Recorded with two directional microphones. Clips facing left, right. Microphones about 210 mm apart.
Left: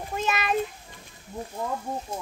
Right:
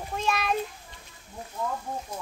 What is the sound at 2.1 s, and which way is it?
Speech, 25° left (ahead or behind).